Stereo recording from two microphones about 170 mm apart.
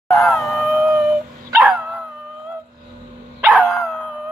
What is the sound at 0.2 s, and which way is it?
Howl, centre (ahead or behind).